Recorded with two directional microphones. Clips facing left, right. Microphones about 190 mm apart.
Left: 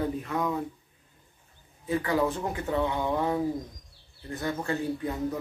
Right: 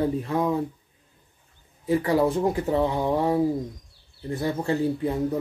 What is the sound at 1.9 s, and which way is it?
A man's voice, 35° right (ahead or behind).